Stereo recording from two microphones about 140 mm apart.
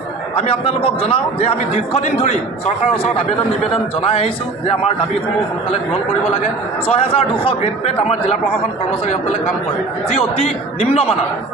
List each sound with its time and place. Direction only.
0.4 s a man's voice: 45° left (ahead or behind)
6.9 s a man's voice: 45° left (ahead or behind)